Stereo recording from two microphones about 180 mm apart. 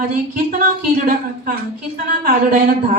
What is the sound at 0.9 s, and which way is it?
A woman's voice, 50° right (ahead or behind).